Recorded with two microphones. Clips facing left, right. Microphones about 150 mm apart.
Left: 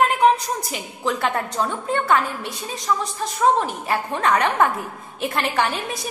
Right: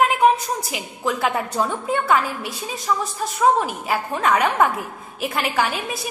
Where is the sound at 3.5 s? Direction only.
5° right (ahead or behind).